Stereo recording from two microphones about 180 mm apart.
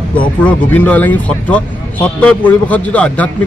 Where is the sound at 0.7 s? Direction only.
10° left (ahead or behind).